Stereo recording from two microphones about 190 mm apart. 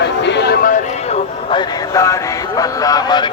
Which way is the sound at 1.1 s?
30° left (ahead or behind).